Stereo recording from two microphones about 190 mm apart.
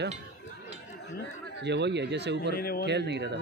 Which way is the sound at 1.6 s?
65° right (ahead or behind).